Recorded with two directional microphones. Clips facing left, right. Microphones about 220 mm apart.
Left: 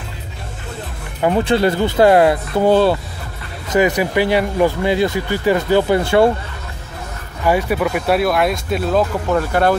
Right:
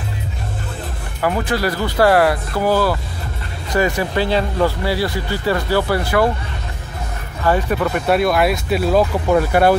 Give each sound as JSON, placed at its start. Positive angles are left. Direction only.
{"t": 1.2, "sound": "speech", "side_deg": 25}
{"t": 7.4, "sound": "speech", "side_deg": 10}